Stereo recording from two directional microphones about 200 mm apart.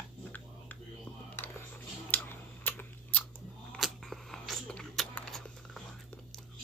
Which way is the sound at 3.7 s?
Centre (ahead or behind).